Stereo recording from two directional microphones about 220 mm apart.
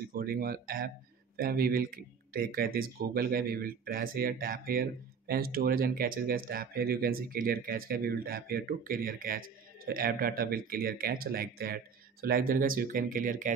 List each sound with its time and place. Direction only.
0.1 s speech: 40° right (ahead or behind)